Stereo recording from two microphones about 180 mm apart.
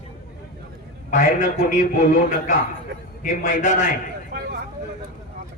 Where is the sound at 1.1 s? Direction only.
45° left (ahead or behind).